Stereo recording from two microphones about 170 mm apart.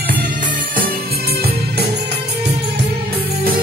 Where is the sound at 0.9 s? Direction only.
65° right (ahead or behind).